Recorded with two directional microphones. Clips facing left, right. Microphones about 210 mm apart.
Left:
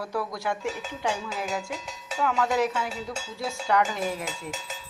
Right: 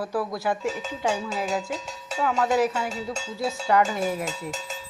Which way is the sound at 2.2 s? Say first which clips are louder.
Right 1 dB; 30° right (ahead or behind).